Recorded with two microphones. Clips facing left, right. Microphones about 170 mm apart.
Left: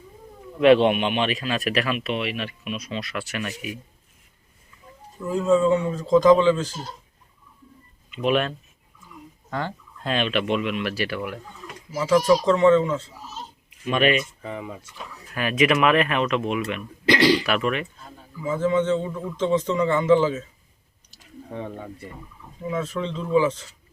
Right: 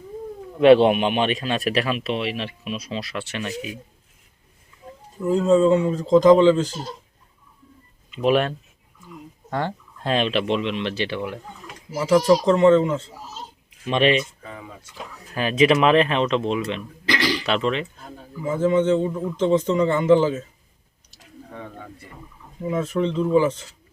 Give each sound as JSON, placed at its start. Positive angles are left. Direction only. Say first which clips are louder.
{"t": 0.6, "sound": "speech", "louder": "right 3 dB", "side_deg": -35}
{"t": 5.2, "sound": "a man's voice", "louder": "right 3 dB", "side_deg": -20}
{"t": 8.1, "sound": "a man's voice", "louder": "right 3 dB", "side_deg": -35}
{"t": 14.4, "sound": "speech", "louder": "left 5 dB", "side_deg": 20}
{"t": 15.4, "sound": "a man's voice", "louder": "right 3 dB", "side_deg": -30}
{"t": 17.1, "sound": "speech", "louder": "left 6 dB", "side_deg": 30}
{"t": 17.4, "sound": "a man's voice", "louder": "right 1 dB", "side_deg": -25}
{"t": 21.5, "sound": "speech", "louder": "left 5 dB", "side_deg": 25}
{"t": 22.7, "sound": "a man's voice", "louder": "right 5 dB", "side_deg": -20}